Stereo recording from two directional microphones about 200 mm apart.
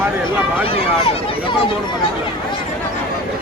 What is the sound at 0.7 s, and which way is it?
Speech, 30° left (ahead or behind).